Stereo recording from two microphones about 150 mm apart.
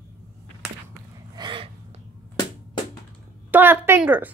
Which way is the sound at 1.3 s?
30° right (ahead or behind).